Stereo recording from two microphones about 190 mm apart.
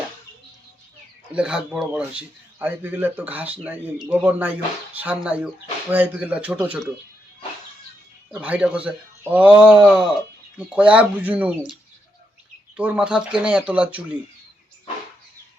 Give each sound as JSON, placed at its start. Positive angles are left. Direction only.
{"t": 1.3, "sound": "speech", "side_deg": -5}
{"t": 8.3, "sound": "speech", "side_deg": -5}
{"t": 12.7, "sound": "speech", "side_deg": -5}